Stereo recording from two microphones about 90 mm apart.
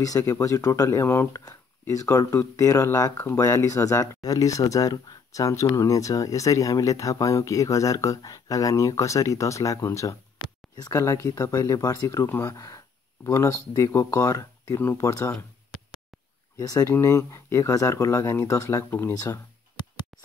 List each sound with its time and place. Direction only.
0.0 s speech: 40° left (ahead or behind)
1.0 s speech: 25° left (ahead or behind)
1.3 s speech: 40° left (ahead or behind)
16.5 s speech: 40° left (ahead or behind)
19.1 s speech: 40° left (ahead or behind)